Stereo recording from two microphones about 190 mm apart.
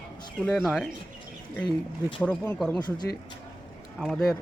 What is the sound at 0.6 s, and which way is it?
Speech, centre (ahead or behind).